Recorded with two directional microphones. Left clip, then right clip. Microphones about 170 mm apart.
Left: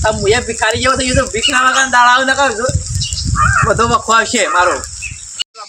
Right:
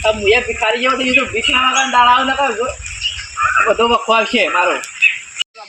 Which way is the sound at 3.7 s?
20° left (ahead or behind).